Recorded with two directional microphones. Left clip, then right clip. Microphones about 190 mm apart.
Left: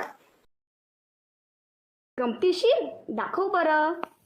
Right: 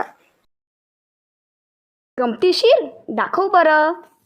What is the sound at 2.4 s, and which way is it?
A woman's voice, 35° right (ahead or behind).